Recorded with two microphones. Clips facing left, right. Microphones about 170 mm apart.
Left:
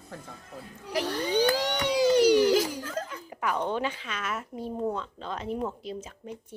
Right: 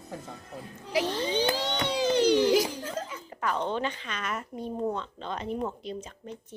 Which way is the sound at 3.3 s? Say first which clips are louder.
Even; 10° left (ahead or behind).